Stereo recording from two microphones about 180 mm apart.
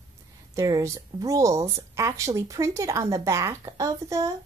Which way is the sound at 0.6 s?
20° right (ahead or behind).